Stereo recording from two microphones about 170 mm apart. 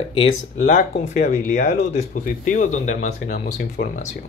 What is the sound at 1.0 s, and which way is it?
Speech, 45° left (ahead or behind).